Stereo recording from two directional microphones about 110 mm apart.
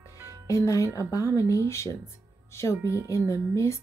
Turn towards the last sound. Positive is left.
turn(degrees=30)  # may be behind; listen again after turning